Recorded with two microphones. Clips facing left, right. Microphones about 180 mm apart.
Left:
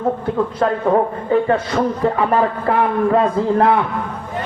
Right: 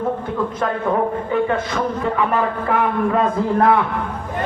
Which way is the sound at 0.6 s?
30° left (ahead or behind).